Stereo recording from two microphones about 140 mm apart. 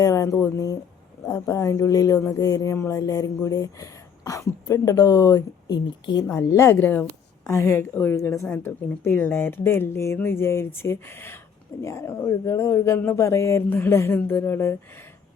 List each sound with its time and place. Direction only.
0.0 s speech: 25° left (ahead or behind)
6.2 s speech: 20° left (ahead or behind)